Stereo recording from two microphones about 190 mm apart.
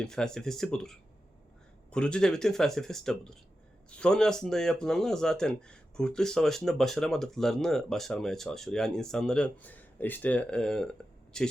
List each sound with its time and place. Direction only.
0.0 s speech: 5° left (ahead or behind)